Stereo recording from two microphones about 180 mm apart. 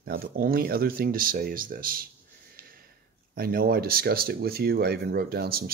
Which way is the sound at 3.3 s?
55° right (ahead or behind).